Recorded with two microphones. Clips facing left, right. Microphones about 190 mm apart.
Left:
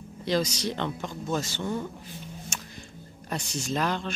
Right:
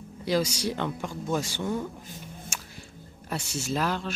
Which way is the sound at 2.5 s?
10° right (ahead or behind).